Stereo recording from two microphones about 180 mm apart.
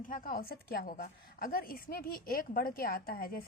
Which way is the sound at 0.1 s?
50° left (ahead or behind).